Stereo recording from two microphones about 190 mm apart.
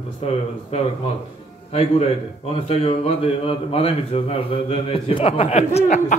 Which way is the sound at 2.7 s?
30° left (ahead or behind).